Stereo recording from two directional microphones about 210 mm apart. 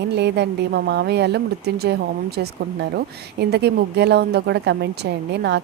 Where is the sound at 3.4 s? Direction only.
50° right (ahead or behind).